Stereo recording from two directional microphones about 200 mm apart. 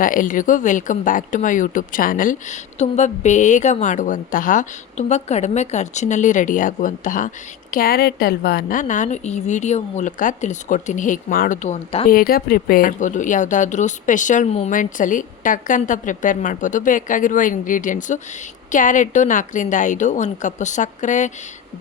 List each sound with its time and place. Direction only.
0.0 s speech: 40° left (ahead or behind)
12.0 s speech: 45° left (ahead or behind)